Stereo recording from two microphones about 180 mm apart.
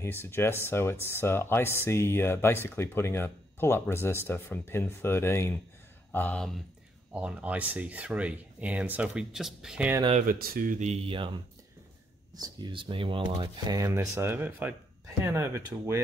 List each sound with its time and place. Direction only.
0.0 s speech: 15° left (ahead or behind)
7.1 s speech: 5° right (ahead or behind)
10.2 s speech: 55° right (ahead or behind); by 16.0 s 15° right (ahead or behind)